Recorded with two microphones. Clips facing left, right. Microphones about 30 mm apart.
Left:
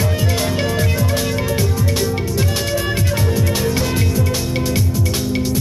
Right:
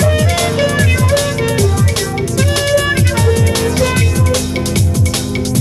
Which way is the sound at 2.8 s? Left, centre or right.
Right.